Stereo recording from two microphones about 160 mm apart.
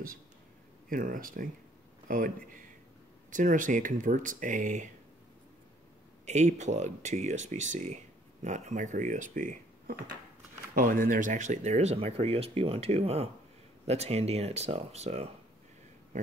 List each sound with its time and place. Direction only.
0.8 s speech: 60° right (ahead or behind)
6.2 s speech: 45° right (ahead or behind)